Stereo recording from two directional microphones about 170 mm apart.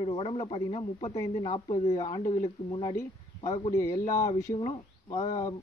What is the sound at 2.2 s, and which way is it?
Speech, 50° left (ahead or behind).